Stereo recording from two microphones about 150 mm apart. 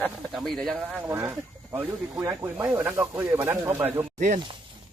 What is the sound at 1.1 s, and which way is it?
Speech, 15° right (ahead or behind).